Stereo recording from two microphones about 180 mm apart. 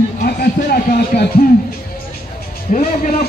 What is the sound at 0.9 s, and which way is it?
Speech, 60° left (ahead or behind).